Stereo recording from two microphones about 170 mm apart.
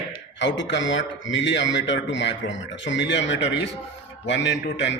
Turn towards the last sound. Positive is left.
turn(degrees=90)